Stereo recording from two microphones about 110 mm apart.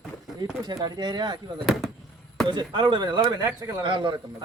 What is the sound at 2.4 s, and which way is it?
Speech, 45° right (ahead or behind).